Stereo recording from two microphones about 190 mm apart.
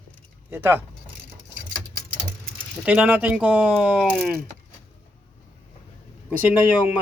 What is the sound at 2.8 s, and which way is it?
Speech, 10° right (ahead or behind).